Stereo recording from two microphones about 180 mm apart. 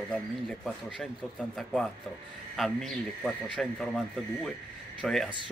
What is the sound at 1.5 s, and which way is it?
Speech, centre (ahead or behind).